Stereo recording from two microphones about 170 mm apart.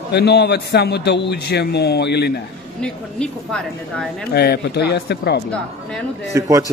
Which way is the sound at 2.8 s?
5° left (ahead or behind).